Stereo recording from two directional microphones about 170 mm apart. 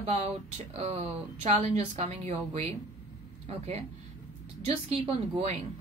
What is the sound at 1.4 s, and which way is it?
A woman's voice, 40° right (ahead or behind).